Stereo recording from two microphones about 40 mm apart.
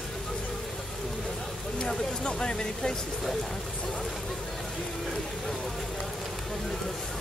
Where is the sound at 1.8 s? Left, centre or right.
Centre.